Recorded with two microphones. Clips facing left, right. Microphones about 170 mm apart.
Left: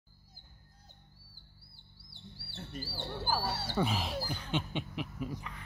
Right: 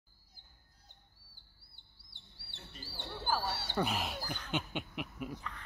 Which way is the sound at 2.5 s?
40° left (ahead or behind).